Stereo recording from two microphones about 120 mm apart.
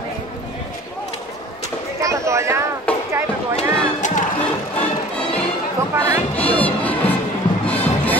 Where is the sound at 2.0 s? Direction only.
25° right (ahead or behind).